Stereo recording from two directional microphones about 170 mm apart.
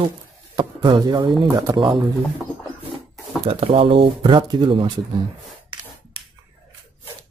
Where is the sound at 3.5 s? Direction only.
35° right (ahead or behind).